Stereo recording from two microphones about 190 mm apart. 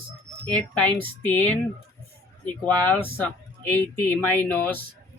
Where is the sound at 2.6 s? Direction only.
10° left (ahead or behind).